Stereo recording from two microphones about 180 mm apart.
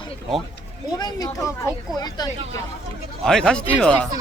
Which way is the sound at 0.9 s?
20° left (ahead or behind).